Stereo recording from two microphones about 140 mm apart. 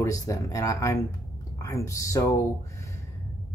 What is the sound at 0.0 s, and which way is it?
Speech, 25° left (ahead or behind).